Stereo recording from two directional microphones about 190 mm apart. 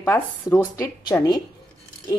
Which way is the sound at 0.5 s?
10° left (ahead or behind).